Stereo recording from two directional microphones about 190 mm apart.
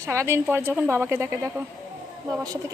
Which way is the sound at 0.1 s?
15° right (ahead or behind).